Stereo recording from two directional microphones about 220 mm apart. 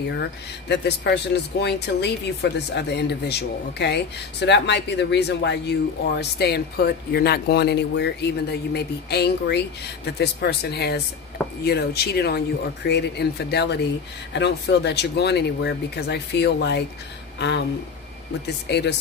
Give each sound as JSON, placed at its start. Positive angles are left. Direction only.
{"t": 0.7, "sound": "speech", "side_deg": 50}
{"t": 18.7, "sound": "speech", "side_deg": 50}